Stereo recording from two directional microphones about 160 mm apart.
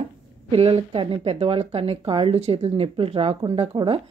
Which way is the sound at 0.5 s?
35° right (ahead or behind).